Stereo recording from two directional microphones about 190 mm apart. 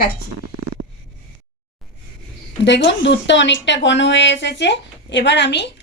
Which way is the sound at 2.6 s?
70° left (ahead or behind).